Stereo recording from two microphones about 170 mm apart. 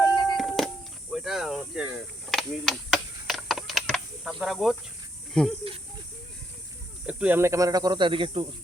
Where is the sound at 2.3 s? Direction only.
Centre (ahead or behind).